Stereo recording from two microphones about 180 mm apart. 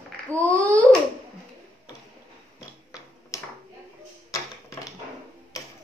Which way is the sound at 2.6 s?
20° left (ahead or behind).